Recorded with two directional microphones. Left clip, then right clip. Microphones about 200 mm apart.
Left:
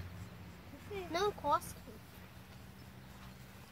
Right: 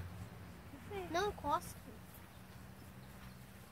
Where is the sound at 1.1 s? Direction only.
15° left (ahead or behind).